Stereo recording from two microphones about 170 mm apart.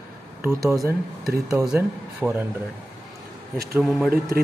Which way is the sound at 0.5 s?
15° right (ahead or behind).